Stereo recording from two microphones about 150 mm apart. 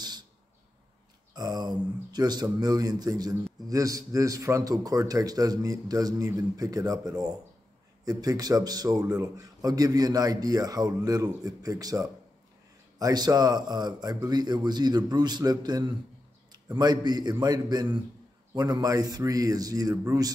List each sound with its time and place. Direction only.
1.3 s a man's voice: 25° right (ahead or behind)